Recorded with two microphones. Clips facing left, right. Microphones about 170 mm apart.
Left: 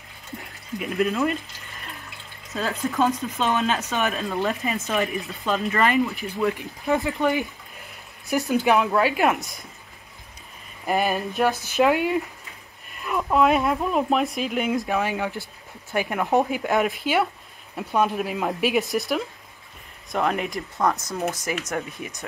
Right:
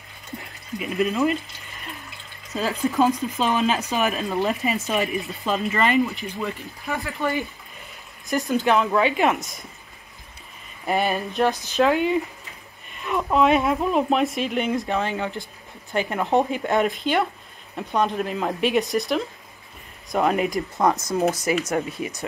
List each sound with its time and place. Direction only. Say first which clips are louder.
0.7 s speech: right 1 dB; centre (ahead or behind)
2.7 s speech: right 3 dB; 10° right (ahead or behind)
6.5 s speech: left 6 dB; 20° left (ahead or behind); by 9.6 s centre (ahead or behind)
10.9 s speech: even; centre (ahead or behind)
20.7 s speech: right 1 dB; 15° right (ahead or behind)